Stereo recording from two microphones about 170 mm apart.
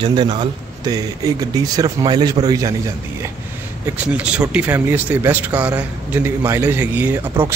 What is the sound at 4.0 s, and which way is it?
Speech, 10° right (ahead or behind).